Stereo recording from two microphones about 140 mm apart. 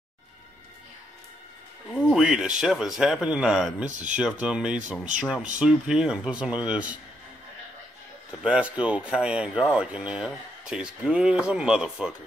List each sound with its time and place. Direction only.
1.9 s a sound: 5° right (ahead or behind)
2.6 s speech: 5° right (ahead or behind)
5.1 s speech: 65° right (ahead or behind)
5.6 s speech: 5° right (ahead or behind)
8.3 s speech: 5° right (ahead or behind)